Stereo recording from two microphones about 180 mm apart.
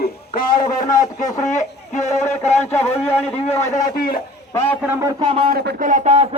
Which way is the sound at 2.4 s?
35° left (ahead or behind).